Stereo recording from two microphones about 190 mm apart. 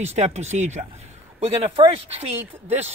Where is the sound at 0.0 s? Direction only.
35° right (ahead or behind).